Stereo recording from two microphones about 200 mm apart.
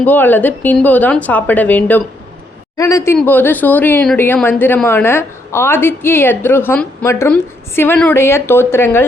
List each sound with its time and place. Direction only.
0.0 s a woman's voice: 10° left (ahead or behind)